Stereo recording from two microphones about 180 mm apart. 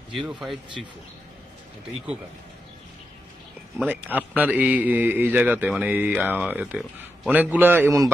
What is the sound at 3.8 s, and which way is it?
A man's voice, 10° right (ahead or behind).